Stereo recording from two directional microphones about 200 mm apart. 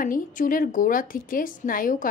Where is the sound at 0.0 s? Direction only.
40° left (ahead or behind).